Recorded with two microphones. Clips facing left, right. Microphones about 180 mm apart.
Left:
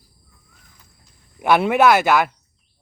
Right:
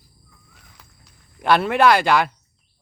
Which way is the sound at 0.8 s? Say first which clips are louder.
Right 4 dB; 75° right (ahead or behind).